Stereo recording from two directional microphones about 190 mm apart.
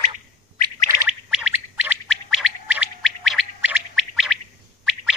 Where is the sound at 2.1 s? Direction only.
5° right (ahead or behind).